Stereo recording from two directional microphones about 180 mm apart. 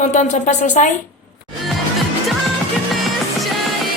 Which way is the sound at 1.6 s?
Centre (ahead or behind).